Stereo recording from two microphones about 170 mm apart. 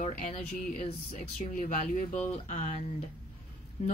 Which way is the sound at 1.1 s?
45° left (ahead or behind).